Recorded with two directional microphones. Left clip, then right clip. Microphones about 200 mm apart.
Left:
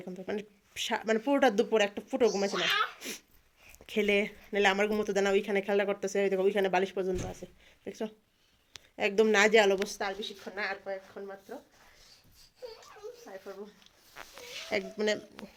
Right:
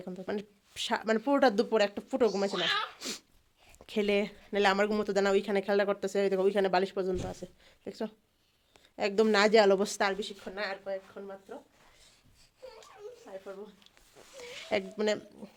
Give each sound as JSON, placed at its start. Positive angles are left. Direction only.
{"t": 0.0, "sound": "speech", "side_deg": -10}
{"t": 9.7, "sound": "a woman's voice", "side_deg": -40}
{"t": 10.0, "sound": "a woman's voice", "side_deg": -60}
{"t": 10.4, "sound": "speech", "side_deg": -20}
{"t": 10.8, "sound": "speech", "side_deg": 0}
{"t": 14.4, "sound": "speech", "side_deg": -15}